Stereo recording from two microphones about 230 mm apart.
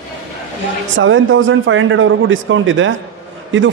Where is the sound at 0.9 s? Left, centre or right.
Right.